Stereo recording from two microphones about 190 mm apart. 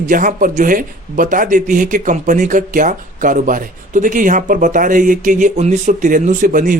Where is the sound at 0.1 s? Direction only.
45° right (ahead or behind).